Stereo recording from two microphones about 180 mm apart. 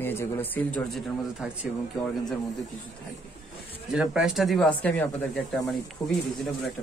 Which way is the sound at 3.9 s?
5° right (ahead or behind).